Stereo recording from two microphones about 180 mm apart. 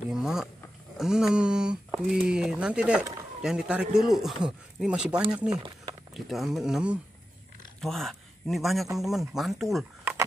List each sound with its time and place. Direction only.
0.1 s a sound: 5° right (ahead or behind)
3.4 s a man's voice: 5° right (ahead or behind)
5.5 s speech: 25° right (ahead or behind)
6.1 s a man's voice: centre (ahead or behind)